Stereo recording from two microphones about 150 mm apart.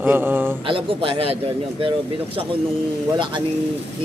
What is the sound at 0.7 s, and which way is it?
Speech, 35° right (ahead or behind).